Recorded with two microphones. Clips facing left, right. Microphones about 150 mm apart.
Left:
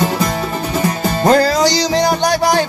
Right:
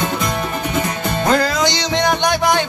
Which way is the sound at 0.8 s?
40° left (ahead or behind).